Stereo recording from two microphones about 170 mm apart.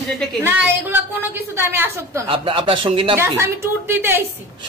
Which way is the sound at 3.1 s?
15° right (ahead or behind).